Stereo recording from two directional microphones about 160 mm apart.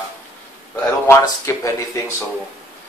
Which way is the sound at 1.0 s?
20° left (ahead or behind).